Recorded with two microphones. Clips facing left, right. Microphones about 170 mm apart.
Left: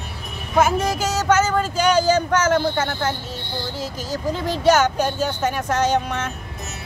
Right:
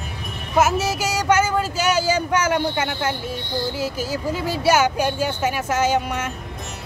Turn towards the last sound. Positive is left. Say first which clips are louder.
# even
turn(degrees=-10)  # may be behind; listen again after turning